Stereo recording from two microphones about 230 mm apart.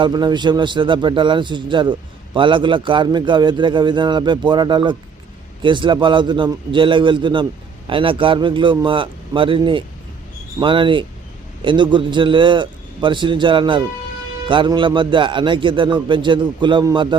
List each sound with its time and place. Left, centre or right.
0.0 s speech: centre